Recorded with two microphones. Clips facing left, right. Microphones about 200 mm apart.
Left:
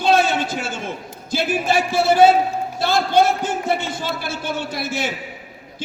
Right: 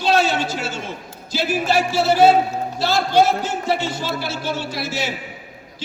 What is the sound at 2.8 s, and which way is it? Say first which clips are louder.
A man's voice: even; 50° left (ahead or behind).